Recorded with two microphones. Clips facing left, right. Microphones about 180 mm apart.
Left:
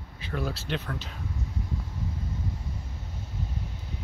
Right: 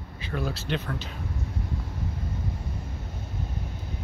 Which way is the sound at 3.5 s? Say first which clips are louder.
Right 2 dB; 55° right (ahead or behind).